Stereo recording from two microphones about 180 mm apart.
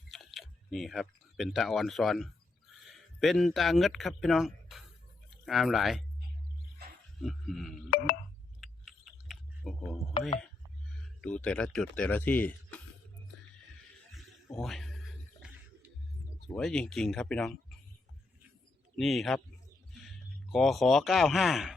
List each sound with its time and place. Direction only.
0.1 s speech: centre (ahead or behind)
7.2 s speech: centre (ahead or behind)
7.9 s music: 55° left (ahead or behind)
8.6 s clicking: centre (ahead or behind)
10.2 s speech: 35° left (ahead or behind)
10.4 s speech: 5° left (ahead or behind)
14.1 s a sound: centre (ahead or behind)
16.6 s speech: centre (ahead or behind)
18.9 s speech: centre (ahead or behind)
20.5 s speech: centre (ahead or behind)